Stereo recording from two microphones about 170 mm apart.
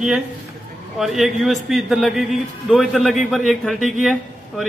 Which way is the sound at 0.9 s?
Centre (ahead or behind).